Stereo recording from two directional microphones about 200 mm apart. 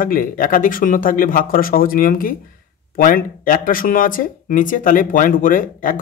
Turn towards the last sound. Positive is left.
turn(degrees=40)  # may be behind; listen again after turning